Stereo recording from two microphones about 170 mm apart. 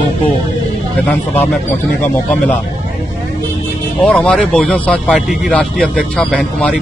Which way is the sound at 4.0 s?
5° left (ahead or behind).